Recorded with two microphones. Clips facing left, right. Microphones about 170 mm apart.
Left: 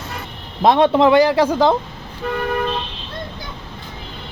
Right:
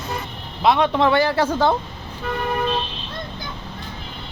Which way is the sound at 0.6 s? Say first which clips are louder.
Left 4 dB; 35° left (ahead or behind).